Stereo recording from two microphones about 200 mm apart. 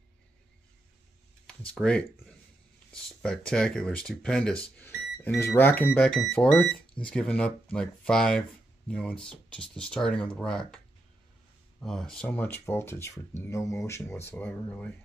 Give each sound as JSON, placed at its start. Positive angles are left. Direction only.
{"t": 1.7, "sound": "speech", "side_deg": 5}
{"t": 4.7, "sound": "a sound", "side_deg": 10}
{"t": 5.4, "sound": "speech", "side_deg": 10}
{"t": 11.8, "sound": "speech", "side_deg": 0}